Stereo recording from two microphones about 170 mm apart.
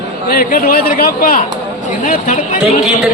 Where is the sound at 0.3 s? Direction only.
60° left (ahead or behind).